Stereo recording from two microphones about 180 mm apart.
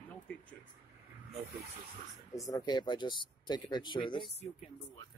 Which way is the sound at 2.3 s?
20° left (ahead or behind).